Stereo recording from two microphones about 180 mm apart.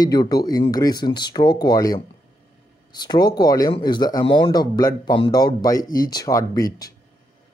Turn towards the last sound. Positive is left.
turn(degrees=20)  # may be behind; listen again after turning